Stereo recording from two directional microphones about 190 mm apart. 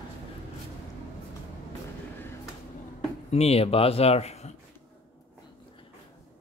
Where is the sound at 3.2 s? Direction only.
35° left (ahead or behind).